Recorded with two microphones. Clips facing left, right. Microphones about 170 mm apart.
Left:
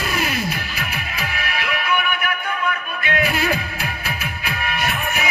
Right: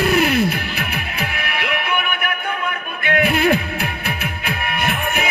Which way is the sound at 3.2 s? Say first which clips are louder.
Right 7 dB; 55° right (ahead or behind).